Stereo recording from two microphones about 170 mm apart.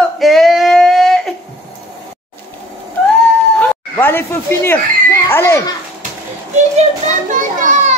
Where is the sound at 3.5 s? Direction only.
10° left (ahead or behind).